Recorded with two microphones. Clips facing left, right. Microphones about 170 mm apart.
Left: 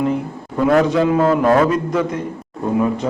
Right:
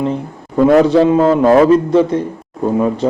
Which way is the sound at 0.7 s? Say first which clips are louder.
Right 4 dB; 30° right (ahead or behind).